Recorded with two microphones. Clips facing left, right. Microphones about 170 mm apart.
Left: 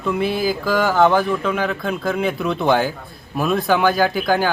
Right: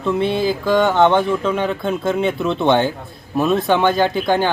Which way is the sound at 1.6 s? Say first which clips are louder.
Right 2 dB; 30° right (ahead or behind).